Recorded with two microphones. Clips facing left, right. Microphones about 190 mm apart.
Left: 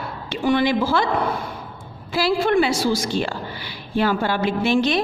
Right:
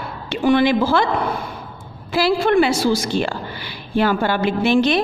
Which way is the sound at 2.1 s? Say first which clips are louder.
Right 2 dB; 65° right (ahead or behind).